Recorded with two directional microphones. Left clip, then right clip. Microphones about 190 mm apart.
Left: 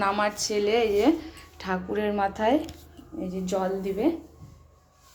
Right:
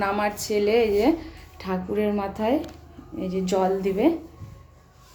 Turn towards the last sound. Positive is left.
turn(degrees=-25)  # may be behind; listen again after turning